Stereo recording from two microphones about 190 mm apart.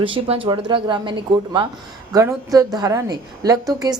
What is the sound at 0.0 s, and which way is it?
A woman's voice, 25° right (ahead or behind).